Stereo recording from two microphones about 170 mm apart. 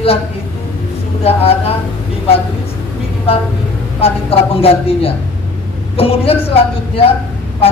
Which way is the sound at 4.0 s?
35° left (ahead or behind).